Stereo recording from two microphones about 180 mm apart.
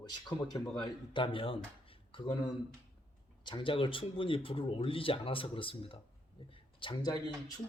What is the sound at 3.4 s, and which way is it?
Speech, 30° left (ahead or behind).